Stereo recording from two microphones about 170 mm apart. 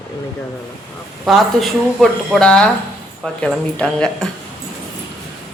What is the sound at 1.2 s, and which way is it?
Speech, centre (ahead or behind).